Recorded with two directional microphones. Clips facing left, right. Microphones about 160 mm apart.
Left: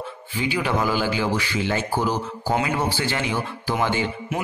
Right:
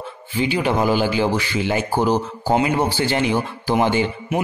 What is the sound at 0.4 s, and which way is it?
A man's voice, 20° right (ahead or behind).